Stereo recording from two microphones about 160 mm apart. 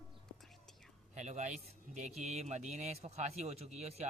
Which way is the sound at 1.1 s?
45° right (ahead or behind).